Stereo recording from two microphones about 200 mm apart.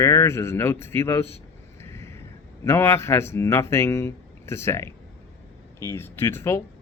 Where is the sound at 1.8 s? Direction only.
15° left (ahead or behind).